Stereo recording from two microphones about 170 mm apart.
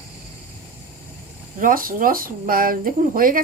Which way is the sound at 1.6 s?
55° right (ahead or behind).